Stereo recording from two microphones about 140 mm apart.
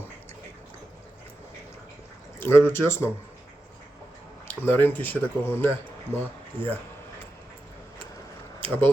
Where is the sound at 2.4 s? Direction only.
15° left (ahead or behind).